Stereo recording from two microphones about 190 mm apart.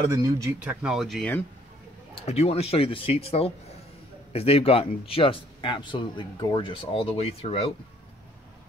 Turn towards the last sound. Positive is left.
turn(degrees=30)  # may be behind; listen again after turning